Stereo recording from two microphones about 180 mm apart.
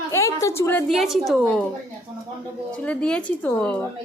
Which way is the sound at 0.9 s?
Centre (ahead or behind).